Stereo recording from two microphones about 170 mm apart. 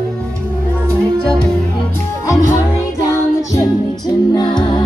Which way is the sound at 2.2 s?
15° left (ahead or behind).